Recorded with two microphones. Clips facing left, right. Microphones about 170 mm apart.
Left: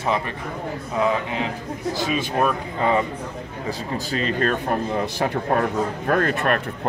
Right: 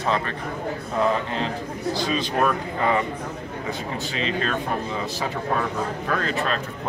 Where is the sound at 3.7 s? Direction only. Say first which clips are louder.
Left 4 dB; 45° left (ahead or behind).